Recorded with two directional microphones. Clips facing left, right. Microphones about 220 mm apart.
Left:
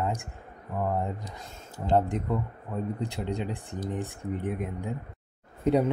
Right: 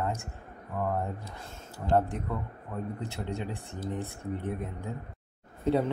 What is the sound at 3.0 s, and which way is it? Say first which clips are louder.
Speech: left 4 dB; 15° left (ahead or behind).